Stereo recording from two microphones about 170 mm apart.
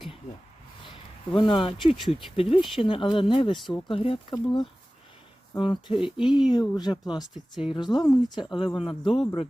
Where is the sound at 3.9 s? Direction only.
30° left (ahead or behind).